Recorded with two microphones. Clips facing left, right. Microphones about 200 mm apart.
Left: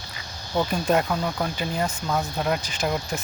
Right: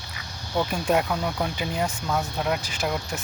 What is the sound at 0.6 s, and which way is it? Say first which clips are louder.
Speech: left 1 dB; 10° right (ahead or behind).